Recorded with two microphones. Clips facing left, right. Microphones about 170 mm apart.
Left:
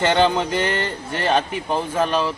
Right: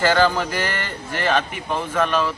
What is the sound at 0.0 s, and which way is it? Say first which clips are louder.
A man's voice: even; 25° left (ahead or behind).